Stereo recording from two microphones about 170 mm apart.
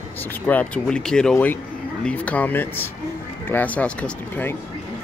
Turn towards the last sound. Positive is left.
turn(degrees=10)  # may be behind; listen again after turning